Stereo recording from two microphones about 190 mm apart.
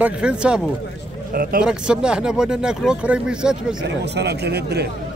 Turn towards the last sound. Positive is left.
turn(degrees=-60)  # may be behind; listen again after turning